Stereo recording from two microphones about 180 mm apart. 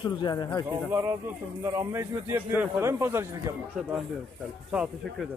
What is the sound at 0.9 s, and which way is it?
Speech, 15° right (ahead or behind).